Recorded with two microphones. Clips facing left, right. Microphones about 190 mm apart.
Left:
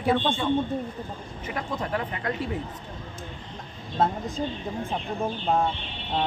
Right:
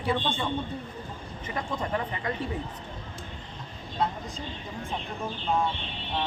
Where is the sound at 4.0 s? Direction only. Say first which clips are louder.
Left 5 dB; 45° left (ahead or behind).